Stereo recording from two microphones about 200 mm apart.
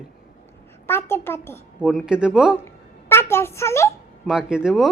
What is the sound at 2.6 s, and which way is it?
A woman's voice, 10° left (ahead or behind).